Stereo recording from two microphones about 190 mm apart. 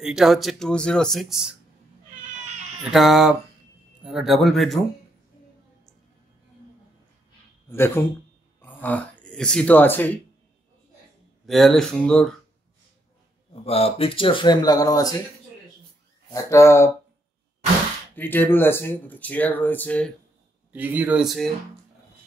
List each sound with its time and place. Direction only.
0.0 s speech: centre (ahead or behind)
2.8 s speech: centre (ahead or behind)
7.7 s speech: 10° left (ahead or behind)
11.4 s speech: centre (ahead or behind)
13.5 s speech: 30° left (ahead or behind)
16.3 s speech: 15° left (ahead or behind)
18.1 s speech: 10° left (ahead or behind)
20.7 s speech: 10° right (ahead or behind)